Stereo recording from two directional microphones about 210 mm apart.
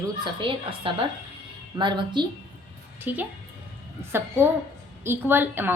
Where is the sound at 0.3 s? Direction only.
25° right (ahead or behind).